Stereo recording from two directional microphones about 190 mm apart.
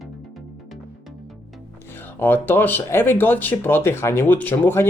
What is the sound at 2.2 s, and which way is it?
Speech, 10° left (ahead or behind).